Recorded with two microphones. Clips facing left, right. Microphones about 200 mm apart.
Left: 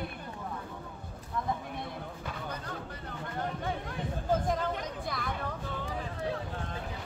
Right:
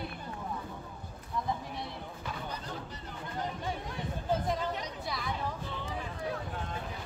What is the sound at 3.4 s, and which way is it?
Chatter, 55° left (ahead or behind).